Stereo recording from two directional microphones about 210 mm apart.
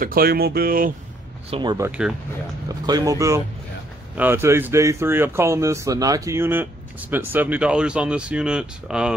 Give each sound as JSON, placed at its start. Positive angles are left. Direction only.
{"t": 0.0, "sound": "speech", "side_deg": -45}
{"t": 1.5, "sound": "speech", "side_deg": -20}
{"t": 1.9, "sound": "speech", "side_deg": -5}
{"t": 2.9, "sound": "speech", "side_deg": -15}